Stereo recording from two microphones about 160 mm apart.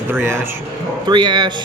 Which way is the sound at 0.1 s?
15° right (ahead or behind).